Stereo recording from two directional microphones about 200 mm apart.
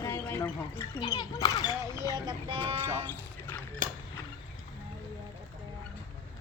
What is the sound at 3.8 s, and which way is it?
Mechanisms, 40° right (ahead or behind).